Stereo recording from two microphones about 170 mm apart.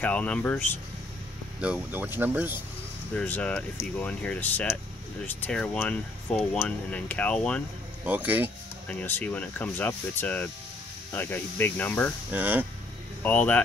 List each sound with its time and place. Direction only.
0.0 s speech: 10° left (ahead or behind)
1.6 s speech: 10° right (ahead or behind)
3.2 s speech: 10° left (ahead or behind)
8.0 s speech: 10° right (ahead or behind)
8.8 s speech: 10° left (ahead or behind)
12.3 s speech: 10° right (ahead or behind)
13.2 s speech: 10° left (ahead or behind)